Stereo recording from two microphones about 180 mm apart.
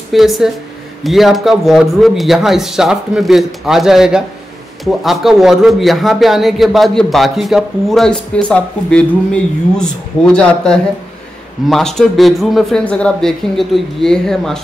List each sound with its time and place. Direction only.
0.1 s a man's voice: centre (ahead or behind)